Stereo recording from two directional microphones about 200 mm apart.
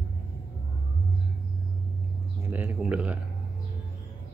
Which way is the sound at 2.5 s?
5° right (ahead or behind).